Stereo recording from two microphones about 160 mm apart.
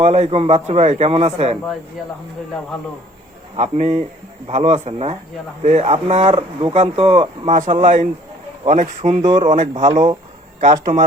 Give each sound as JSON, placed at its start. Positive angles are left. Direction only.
{"t": 0.0, "sound": "a man's voice", "side_deg": -40}
{"t": 2.0, "sound": "speech", "side_deg": 0}
{"t": 3.6, "sound": "a man's voice", "side_deg": -50}
{"t": 7.5, "sound": "speech", "side_deg": -50}
{"t": 9.2, "sound": "speech", "side_deg": -30}
{"t": 9.5, "sound": "speech", "side_deg": -50}
{"t": 9.9, "sound": "speech", "side_deg": -25}
{"t": 10.6, "sound": "speech", "side_deg": -50}